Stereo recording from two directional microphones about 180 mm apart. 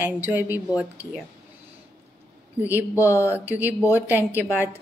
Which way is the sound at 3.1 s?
10° right (ahead or behind).